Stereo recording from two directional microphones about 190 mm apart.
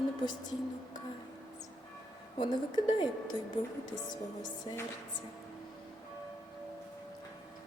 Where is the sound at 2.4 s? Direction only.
25° left (ahead or behind).